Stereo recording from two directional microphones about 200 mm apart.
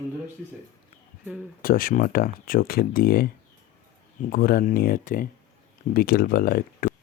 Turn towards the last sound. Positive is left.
turn(degrees=45)  # may be behind; listen again after turning